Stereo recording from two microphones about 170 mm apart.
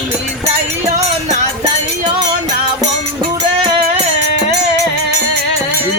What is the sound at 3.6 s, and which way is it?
Music, 35° right (ahead or behind).